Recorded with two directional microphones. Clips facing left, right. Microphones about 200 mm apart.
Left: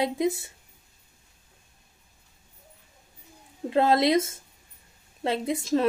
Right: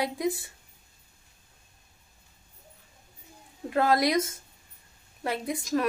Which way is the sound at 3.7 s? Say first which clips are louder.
Left 3 dB; 25° left (ahead or behind).